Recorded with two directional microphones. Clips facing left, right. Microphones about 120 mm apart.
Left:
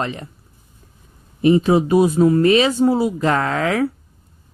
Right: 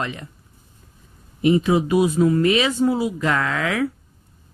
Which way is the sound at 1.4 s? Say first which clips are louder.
Left 3 dB; 35° left (ahead or behind).